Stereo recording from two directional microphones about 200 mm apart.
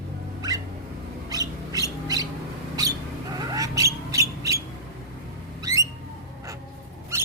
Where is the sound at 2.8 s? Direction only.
20° right (ahead or behind).